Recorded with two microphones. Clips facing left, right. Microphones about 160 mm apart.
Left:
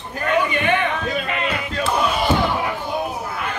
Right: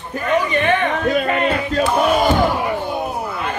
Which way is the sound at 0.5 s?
45° right (ahead or behind).